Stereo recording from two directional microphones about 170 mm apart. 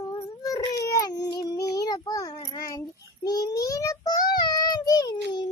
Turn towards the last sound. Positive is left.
turn(degrees=25)  # may be behind; listen again after turning